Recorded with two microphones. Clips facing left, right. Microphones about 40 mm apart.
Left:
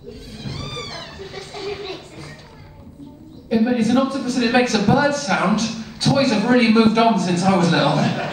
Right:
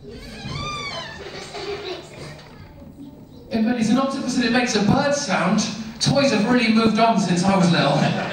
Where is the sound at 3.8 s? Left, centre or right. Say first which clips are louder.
Left 2 dB; left.